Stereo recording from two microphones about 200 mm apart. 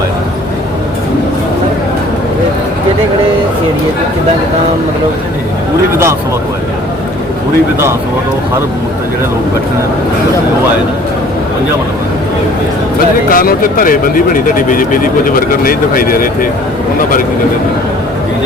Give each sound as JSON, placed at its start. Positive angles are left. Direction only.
{"t": 13.3, "sound": "speech", "side_deg": 45}